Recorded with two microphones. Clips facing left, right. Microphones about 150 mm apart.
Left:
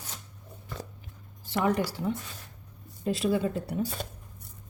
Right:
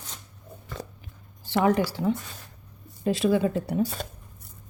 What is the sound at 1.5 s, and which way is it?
Speech, 90° right.